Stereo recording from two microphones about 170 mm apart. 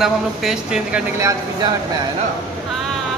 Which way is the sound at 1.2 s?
20° right (ahead or behind).